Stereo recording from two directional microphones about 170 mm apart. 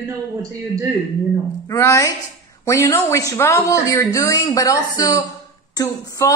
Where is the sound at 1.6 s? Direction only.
15° left (ahead or behind).